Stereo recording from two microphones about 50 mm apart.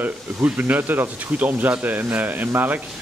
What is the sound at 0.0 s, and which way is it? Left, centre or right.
Speech, right.